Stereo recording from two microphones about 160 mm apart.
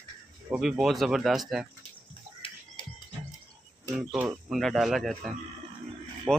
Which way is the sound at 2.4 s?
35° left (ahead or behind).